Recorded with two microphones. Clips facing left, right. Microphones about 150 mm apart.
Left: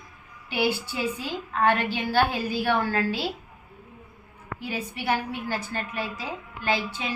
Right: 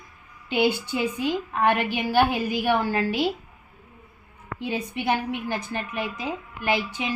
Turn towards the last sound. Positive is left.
turn(degrees=-15)  # may be behind; listen again after turning